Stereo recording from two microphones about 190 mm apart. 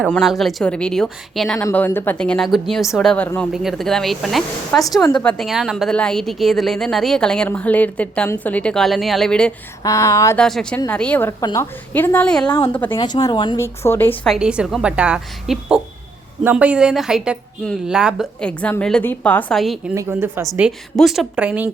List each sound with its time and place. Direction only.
0.1 s a woman's voice: centre (ahead or behind)
3.5 s a woman's voice: centre (ahead or behind)
9.8 s a woman's voice: 15° left (ahead or behind)
10.4 s a woman's voice: 5° left (ahead or behind)
12.5 s speech: 25° left (ahead or behind)
12.7 s a woman's voice: 10° left (ahead or behind)
13.0 s speech: 20° left (ahead or behind)
13.8 s a woman's voice: 10° left (ahead or behind)
14.3 s a woman's voice: 5° right (ahead or behind)
19.9 s a woman's voice: 15° right (ahead or behind)
20.5 s a woman's voice: centre (ahead or behind)